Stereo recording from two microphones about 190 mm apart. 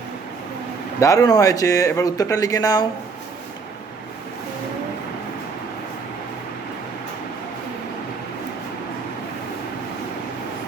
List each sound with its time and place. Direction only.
0.9 s speech: 15° left (ahead or behind)